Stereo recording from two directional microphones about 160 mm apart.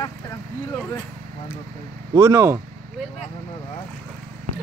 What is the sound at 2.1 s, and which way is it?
Speech, 25° right (ahead or behind).